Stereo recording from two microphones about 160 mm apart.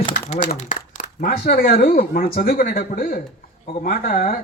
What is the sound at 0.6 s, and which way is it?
Speech, 55° left (ahead or behind).